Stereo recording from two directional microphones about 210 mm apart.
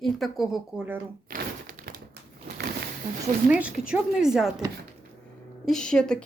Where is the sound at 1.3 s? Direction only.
40° right (ahead or behind).